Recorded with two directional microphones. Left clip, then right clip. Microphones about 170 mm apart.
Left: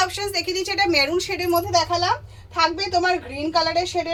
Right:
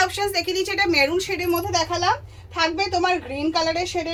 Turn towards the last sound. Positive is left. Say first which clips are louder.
# left 1 dB
turn(degrees=-10)  # may be behind; listen again after turning